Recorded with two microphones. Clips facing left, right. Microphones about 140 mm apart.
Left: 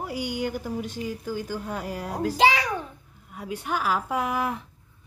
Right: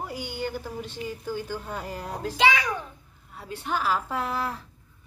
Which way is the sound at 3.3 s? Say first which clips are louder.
Left 1 dB; 10° left (ahead or behind).